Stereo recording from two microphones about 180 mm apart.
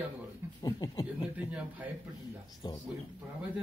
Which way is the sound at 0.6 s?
25° left (ahead or behind).